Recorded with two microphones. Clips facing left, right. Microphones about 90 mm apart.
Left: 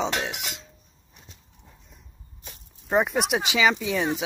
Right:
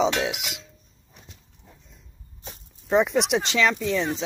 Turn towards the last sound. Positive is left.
turn(degrees=15)  # may be behind; listen again after turning